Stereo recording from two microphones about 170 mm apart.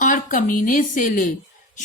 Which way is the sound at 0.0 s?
50° left (ahead or behind).